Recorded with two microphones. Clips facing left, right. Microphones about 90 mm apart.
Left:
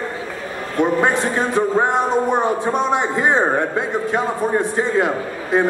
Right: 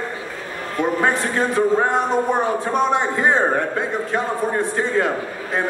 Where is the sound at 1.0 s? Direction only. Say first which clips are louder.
Left 2 dB; 20° left (ahead or behind).